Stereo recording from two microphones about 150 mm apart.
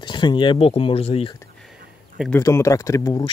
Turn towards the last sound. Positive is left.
turn(degrees=25)  # may be behind; listen again after turning